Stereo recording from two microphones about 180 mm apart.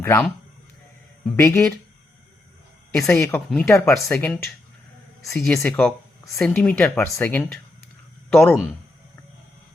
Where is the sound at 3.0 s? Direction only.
5° left (ahead or behind).